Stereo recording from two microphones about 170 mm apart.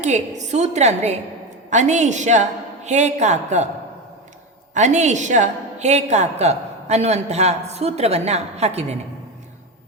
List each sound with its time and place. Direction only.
0.0 s a woman's voice: 45° right (ahead or behind)
4.7 s a woman's voice: 45° right (ahead or behind)